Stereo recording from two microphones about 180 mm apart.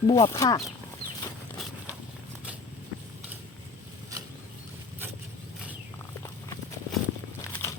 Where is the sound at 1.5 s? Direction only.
Centre (ahead or behind).